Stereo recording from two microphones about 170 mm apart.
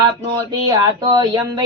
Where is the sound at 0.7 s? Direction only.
20° right (ahead or behind).